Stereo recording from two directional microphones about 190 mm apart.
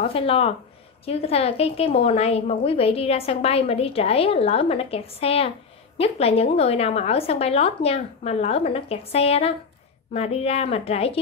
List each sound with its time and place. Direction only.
0.0 s a woman's voice: 30° left (ahead or behind)